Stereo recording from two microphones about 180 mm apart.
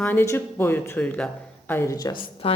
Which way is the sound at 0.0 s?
10° left (ahead or behind).